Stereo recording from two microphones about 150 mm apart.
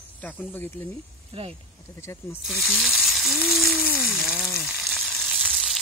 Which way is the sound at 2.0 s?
20° left (ahead or behind).